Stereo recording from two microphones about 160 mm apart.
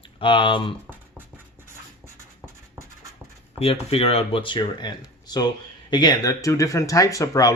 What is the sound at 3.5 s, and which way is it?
Speech, 35° left (ahead or behind).